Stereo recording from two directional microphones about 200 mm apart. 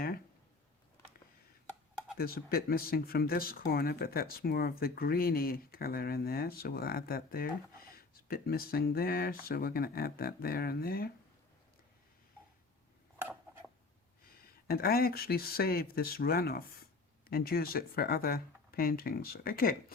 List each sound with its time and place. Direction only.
2.1 s speech: 50° left (ahead or behind)
14.7 s speech: 50° left (ahead or behind)